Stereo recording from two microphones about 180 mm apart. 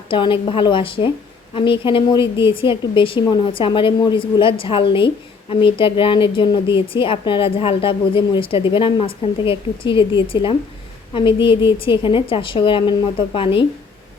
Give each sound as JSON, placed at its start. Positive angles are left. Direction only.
{"t": 0.1, "sound": "a woman's voice", "side_deg": 30}